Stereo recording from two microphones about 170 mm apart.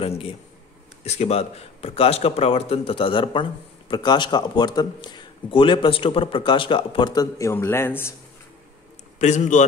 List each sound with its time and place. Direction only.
0.0 s speech: 35° left (ahead or behind); by 8.1 s 15° left (ahead or behind)
9.2 s a man's voice: 45° left (ahead or behind)